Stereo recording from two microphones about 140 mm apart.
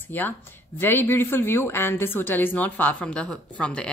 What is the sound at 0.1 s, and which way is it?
A woman's voice, 15° left (ahead or behind).